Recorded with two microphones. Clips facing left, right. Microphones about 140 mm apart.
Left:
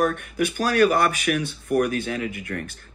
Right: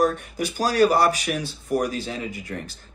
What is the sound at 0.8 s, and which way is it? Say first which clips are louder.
Speech: right 1 dB; 35° right (ahead or behind).